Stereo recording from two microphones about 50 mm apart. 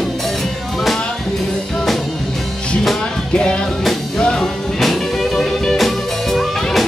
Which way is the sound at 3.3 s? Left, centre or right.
Centre.